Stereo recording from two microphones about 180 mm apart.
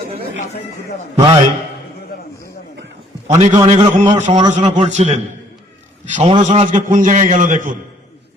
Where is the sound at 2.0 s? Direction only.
55° left (ahead or behind).